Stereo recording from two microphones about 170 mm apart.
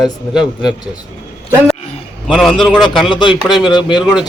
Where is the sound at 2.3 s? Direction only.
Centre (ahead or behind).